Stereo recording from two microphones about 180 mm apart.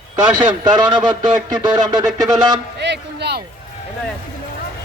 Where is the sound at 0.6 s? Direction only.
25° right (ahead or behind).